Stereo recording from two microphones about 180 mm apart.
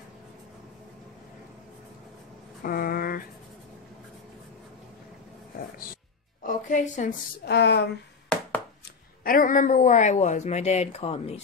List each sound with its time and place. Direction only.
2.6 s a sound: 50° left (ahead or behind)
6.4 s music: 45° left (ahead or behind)
7.4 s speech: 65° left (ahead or behind)
8.3 s chopping: 5° left (ahead or behind)
9.2 s speech: 50° left (ahead or behind); by 11.4 s 35° left (ahead or behind)